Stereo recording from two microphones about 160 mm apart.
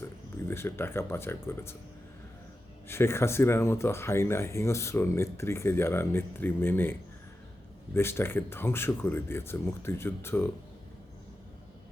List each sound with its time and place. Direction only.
0.4 s speech: 15° left (ahead or behind)
2.8 s speech: 15° left (ahead or behind)
7.9 s speech: 15° left (ahead or behind)